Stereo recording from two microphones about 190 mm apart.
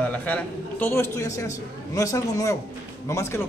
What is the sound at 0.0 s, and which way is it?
A man's voice, 5° left (ahead or behind).